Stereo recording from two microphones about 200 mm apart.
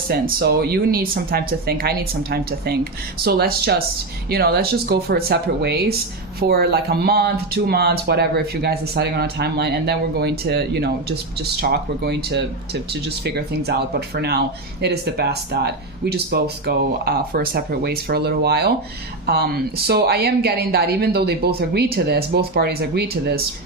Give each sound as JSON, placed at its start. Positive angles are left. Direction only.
{"t": 0.1, "sound": "speech", "side_deg": -50}